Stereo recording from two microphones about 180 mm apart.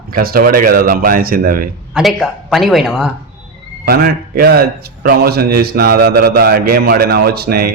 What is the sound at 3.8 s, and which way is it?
A man's voice, 60° right (ahead or behind).